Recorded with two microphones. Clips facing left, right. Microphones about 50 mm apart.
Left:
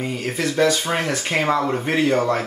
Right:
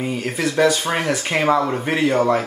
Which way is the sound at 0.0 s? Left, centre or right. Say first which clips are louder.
Right 1 dB; centre.